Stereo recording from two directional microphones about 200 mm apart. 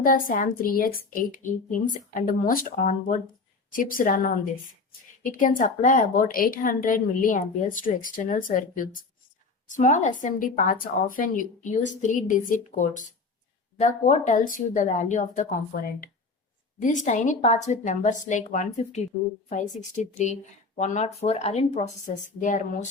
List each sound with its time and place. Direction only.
0.0 s a woman's voice: 45° left (ahead or behind)
16.8 s a woman's voice: 40° left (ahead or behind)